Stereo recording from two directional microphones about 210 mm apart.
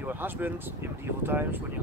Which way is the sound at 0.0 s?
10° right (ahead or behind).